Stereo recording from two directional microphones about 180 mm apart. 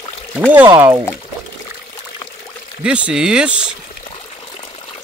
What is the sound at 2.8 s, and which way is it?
Speech, 5° right (ahead or behind).